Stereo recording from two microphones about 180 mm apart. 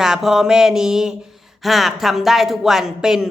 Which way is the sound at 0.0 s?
Centre (ahead or behind).